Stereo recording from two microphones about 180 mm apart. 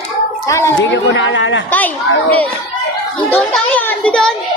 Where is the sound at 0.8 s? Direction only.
90° left.